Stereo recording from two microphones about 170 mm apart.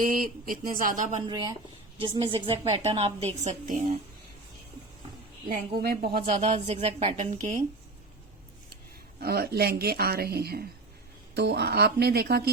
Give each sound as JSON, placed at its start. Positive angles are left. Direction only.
{"t": 0.0, "sound": "speech", "side_deg": -55}
{"t": 1.3, "sound": "a woman's voice", "side_deg": -25}
{"t": 5.5, "sound": "a woman's voice", "side_deg": -60}
{"t": 6.2, "sound": "a woman's voice", "side_deg": -40}
{"t": 9.2, "sound": "speech", "side_deg": -65}